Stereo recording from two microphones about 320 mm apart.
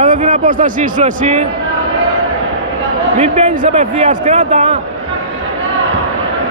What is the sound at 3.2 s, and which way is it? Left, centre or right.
Speech, centre.